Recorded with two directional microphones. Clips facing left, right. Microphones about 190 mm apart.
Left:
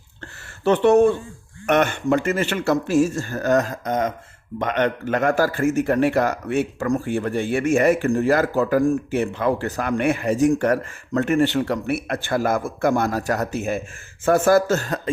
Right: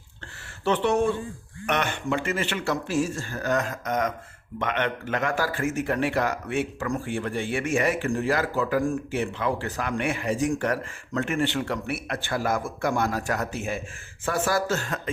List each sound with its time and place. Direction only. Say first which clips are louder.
0.6 s a man's voice: left 8 dB; 45° left (ahead or behind)